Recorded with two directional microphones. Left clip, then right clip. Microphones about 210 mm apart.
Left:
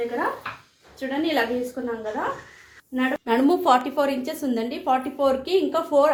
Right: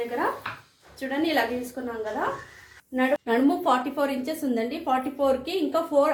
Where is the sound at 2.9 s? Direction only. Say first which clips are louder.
Left 1 dB; 35° left (ahead or behind).